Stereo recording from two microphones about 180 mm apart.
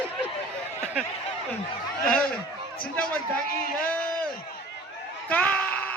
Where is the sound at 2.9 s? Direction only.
5° left (ahead or behind).